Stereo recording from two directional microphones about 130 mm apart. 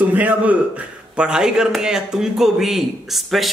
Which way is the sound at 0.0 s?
10° right (ahead or behind).